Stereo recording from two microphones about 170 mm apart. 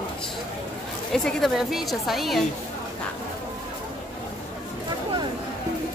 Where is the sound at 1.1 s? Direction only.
Centre (ahead or behind).